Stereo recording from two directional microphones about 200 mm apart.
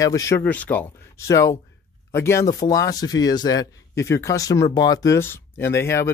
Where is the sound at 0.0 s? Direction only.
15° left (ahead or behind).